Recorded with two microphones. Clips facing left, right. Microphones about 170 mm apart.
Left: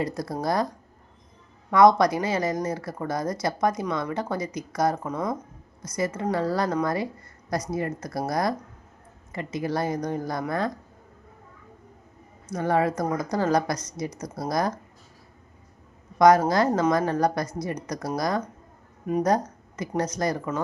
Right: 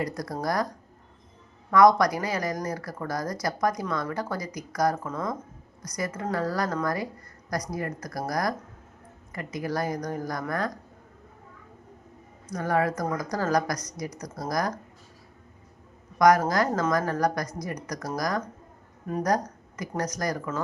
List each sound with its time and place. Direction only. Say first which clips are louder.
0.0 s speech: left 2 dB; 25° left (ahead or behind)
1.7 s speech: left 1 dB; 25° left (ahead or behind)
12.5 s speech: left 2 dB; 25° left (ahead or behind)
16.1 s speech: left 2 dB; 25° left (ahead or behind)